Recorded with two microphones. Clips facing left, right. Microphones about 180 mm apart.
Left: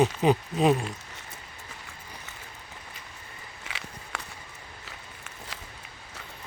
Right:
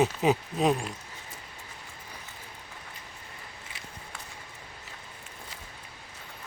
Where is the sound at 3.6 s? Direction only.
80° left.